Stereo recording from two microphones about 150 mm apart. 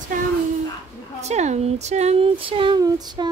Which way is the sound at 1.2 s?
50° right (ahead or behind).